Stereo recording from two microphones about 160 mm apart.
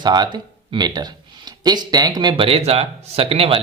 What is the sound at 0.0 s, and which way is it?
Speech, 25° right (ahead or behind).